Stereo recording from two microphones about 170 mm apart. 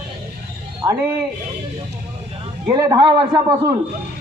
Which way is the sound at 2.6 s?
25° right (ahead or behind).